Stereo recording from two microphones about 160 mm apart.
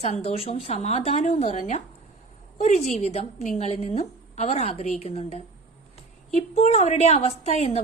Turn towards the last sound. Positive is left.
turn(degrees=40)  # may be behind; listen again after turning